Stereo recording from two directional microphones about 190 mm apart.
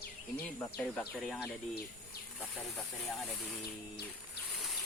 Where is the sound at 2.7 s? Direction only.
Centre (ahead or behind).